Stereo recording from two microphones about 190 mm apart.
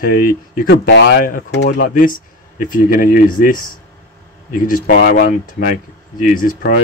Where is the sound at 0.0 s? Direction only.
50° left (ahead or behind); by 1.3 s 65° left (ahead or behind).